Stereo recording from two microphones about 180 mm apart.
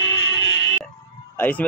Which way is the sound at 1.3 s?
10° left (ahead or behind).